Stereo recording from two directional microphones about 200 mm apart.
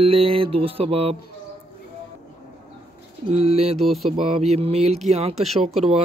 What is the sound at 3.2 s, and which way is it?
Speech, 30° right (ahead or behind).